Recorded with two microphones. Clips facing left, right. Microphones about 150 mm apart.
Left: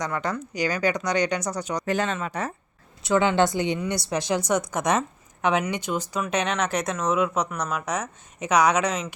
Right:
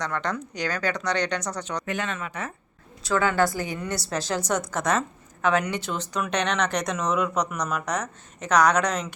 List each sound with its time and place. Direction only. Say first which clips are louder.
0.0 s speech: left 1 dB; 10° left (ahead or behind)
1.8 s speech: left 5 dB; 35° left (ahead or behind)
3.0 s a woman's voice: left 2 dB; 20° left (ahead or behind); by 9.1 s 5° left (ahead or behind)